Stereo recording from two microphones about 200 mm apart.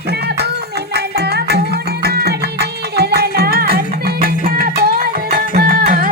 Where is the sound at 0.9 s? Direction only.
55° right (ahead or behind).